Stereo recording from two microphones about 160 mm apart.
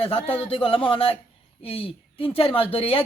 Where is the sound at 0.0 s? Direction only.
35° left (ahead or behind).